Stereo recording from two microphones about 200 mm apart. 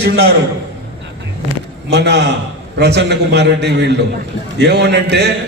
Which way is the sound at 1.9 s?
60° right (ahead or behind).